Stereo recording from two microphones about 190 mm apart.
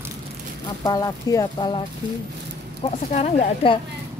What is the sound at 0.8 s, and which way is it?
Speech, 20° left (ahead or behind).